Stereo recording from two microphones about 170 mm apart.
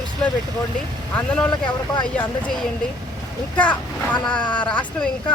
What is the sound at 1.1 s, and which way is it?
Speech, 5° left (ahead or behind).